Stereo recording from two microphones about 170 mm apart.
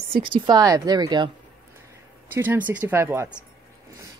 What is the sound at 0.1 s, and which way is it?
A woman's voice, 30° right (ahead or behind).